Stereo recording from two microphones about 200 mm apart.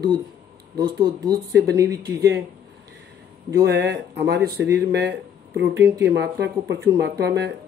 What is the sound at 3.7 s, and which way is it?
Speech, 60° right (ahead or behind).